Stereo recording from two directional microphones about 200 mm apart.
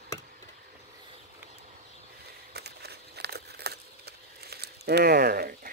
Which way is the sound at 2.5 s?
55° right (ahead or behind).